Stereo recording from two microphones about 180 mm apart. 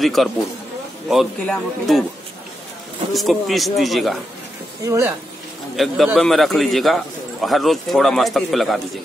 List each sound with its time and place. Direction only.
0.0 s speech: centre (ahead or behind)
3.1 s speech: centre (ahead or behind)
4.8 s speech: 15° right (ahead or behind)
5.8 s speech: centre (ahead or behind)